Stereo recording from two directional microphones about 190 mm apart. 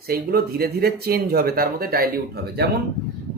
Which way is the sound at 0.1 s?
55° right (ahead or behind).